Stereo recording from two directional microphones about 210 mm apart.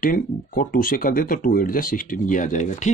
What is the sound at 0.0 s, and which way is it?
Speech, 40° left (ahead or behind).